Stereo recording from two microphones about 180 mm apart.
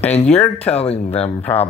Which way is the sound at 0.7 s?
35° left (ahead or behind).